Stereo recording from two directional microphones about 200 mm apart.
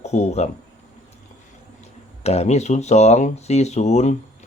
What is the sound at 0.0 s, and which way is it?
Speech, 35° left (ahead or behind).